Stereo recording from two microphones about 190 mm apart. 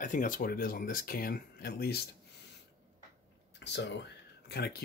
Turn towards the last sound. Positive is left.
turn(degrees=55)  # may be behind; listen again after turning